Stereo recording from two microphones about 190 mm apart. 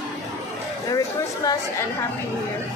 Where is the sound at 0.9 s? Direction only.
20° left (ahead or behind).